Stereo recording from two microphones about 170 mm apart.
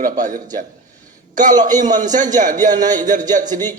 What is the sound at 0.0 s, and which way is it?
Speech, 50° right (ahead or behind).